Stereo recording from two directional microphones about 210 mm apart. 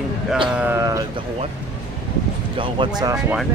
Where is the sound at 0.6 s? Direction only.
10° right (ahead or behind).